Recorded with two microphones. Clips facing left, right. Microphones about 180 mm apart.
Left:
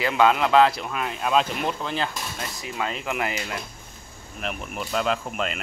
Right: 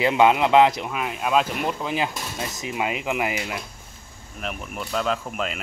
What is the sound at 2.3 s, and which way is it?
Speech, 20° right (ahead or behind).